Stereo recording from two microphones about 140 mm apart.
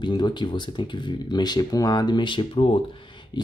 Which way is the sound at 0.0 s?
30° left (ahead or behind).